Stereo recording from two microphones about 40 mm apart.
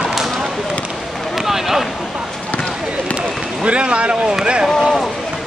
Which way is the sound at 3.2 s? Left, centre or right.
Right.